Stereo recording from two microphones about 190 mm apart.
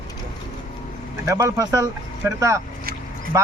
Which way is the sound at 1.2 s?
15° right (ahead or behind).